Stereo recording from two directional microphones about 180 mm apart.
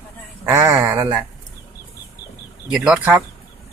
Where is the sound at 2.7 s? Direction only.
5° right (ahead or behind).